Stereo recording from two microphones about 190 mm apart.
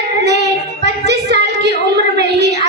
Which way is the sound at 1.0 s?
60° right (ahead or behind).